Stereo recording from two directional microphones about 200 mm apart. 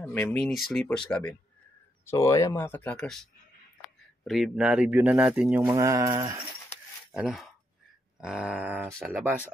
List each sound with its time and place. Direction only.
0.0 s speech: 10° left (ahead or behind)
0.5 s speech: centre (ahead or behind)
5.7 s mantra: 15° right (ahead or behind)
7.1 s speech: centre (ahead or behind)